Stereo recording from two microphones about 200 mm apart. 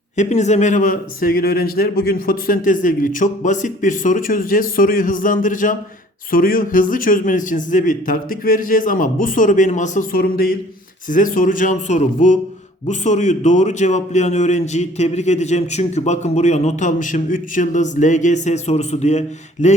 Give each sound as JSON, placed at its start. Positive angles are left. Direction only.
{"t": 0.2, "sound": "a man's voice", "side_deg": 35}